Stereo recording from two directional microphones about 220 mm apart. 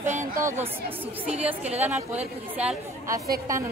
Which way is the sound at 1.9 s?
30° right (ahead or behind).